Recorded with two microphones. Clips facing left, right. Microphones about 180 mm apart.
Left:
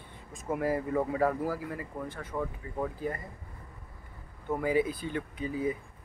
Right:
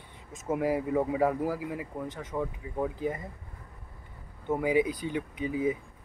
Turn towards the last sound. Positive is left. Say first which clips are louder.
# right 3 dB
turn(degrees=-15)  # may be behind; listen again after turning